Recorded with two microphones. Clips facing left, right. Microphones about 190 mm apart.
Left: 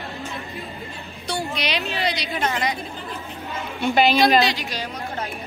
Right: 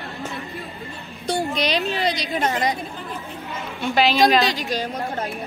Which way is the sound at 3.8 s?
Centre (ahead or behind).